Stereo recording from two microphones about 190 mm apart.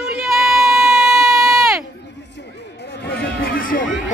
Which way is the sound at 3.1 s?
50° left (ahead or behind).